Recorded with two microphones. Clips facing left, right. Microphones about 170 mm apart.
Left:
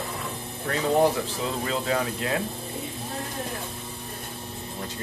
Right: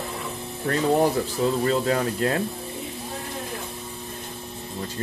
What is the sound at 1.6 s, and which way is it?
Speech, 45° right (ahead or behind).